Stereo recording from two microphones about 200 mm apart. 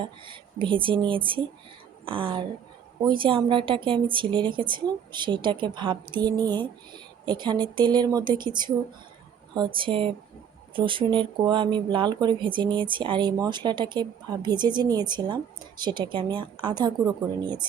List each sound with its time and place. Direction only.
0.0 s a woman's voice: 25° right (ahead or behind)